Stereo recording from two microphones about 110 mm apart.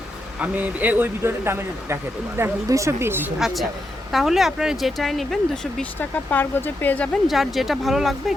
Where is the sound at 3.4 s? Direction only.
Centre (ahead or behind).